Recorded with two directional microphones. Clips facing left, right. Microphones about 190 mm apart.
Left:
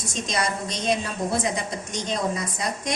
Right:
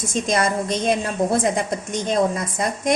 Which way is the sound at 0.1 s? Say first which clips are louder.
Right 6 dB; 50° right (ahead or behind).